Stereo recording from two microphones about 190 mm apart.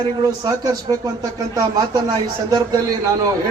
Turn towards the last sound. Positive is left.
turn(degrees=-20)  # may be behind; listen again after turning